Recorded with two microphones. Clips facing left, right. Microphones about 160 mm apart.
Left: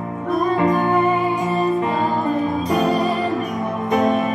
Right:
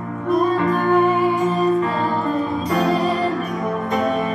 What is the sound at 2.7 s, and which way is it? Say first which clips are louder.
Music: even; 15° left (ahead or behind).